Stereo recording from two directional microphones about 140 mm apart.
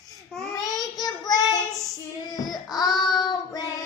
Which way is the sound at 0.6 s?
25° left (ahead or behind).